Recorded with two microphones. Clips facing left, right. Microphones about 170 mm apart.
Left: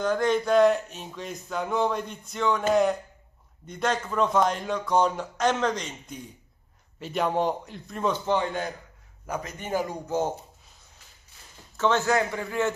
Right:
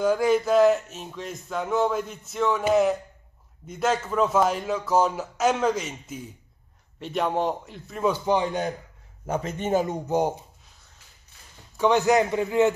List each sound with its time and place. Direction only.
0.0 s speech: 10° right (ahead or behind)
9.2 s speech: 30° right (ahead or behind)
11.7 s a man's voice: 15° right (ahead or behind)